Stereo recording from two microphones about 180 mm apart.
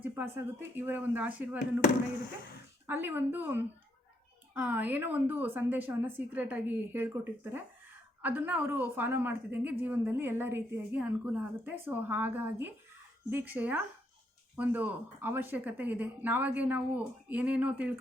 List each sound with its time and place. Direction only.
0.0 s a woman's voice: 10° right (ahead or behind)
2.8 s a woman's voice: 10° right (ahead or behind)